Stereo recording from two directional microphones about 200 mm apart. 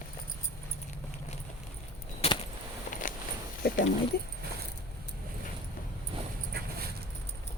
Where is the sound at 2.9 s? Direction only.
40° left (ahead or behind).